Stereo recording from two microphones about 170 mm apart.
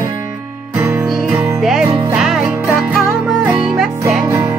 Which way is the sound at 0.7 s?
15° right (ahead or behind).